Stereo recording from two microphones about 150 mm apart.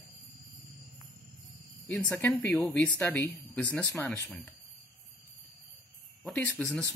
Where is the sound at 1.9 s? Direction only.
10° left (ahead or behind).